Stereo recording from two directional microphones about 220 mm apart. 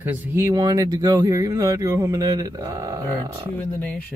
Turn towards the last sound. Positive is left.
turn(degrees=5)  # may be behind; listen again after turning